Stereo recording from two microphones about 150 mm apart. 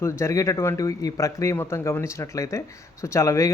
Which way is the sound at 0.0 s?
20° left (ahead or behind).